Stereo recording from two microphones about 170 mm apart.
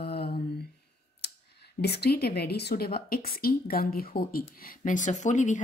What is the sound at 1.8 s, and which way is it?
A woman's voice, 70° left (ahead or behind).